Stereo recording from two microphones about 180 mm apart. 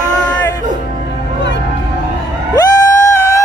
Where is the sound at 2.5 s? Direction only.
20° left (ahead or behind).